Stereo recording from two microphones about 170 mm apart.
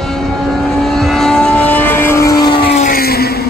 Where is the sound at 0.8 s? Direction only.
Centre (ahead or behind); by 2.6 s 20° left (ahead or behind).